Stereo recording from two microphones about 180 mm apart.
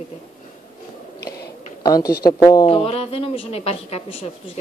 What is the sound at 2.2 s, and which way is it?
A woman's voice, 20° left (ahead or behind).